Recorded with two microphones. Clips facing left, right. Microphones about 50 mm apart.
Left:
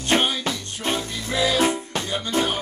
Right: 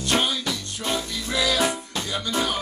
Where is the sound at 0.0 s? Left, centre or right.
Left.